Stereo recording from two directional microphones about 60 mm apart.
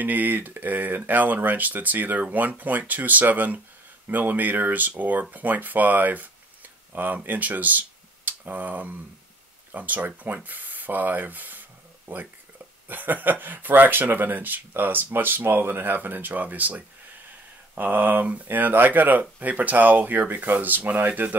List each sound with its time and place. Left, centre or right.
0.0 s speech: right